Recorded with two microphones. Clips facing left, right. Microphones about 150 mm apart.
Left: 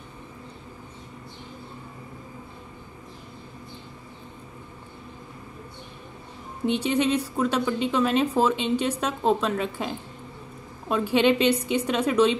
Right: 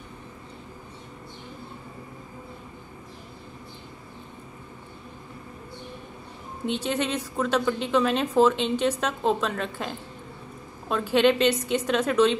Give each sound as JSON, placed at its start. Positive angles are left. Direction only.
{"t": 6.7, "sound": "a woman's voice", "side_deg": 10}